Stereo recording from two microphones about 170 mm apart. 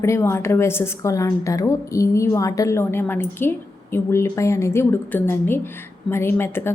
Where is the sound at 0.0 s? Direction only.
15° left (ahead or behind).